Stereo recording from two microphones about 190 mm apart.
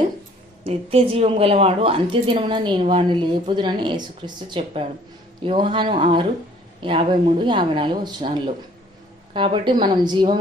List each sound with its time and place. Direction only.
0.7 s a woman's voice: 30° right (ahead or behind)
5.4 s a woman's voice: 30° right (ahead or behind)